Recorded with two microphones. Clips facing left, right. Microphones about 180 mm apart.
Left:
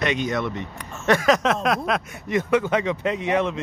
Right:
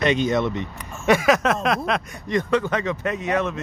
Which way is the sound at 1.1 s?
10° right (ahead or behind).